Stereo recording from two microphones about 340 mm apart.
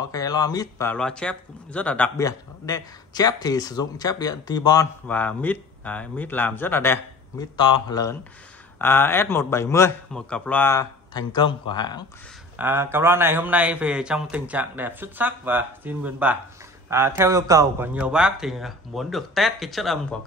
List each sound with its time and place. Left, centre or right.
0.1 s speech: centre
12.5 s a man's voice: centre